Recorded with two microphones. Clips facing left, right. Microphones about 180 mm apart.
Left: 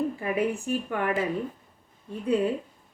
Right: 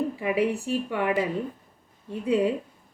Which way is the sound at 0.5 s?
30° right (ahead or behind).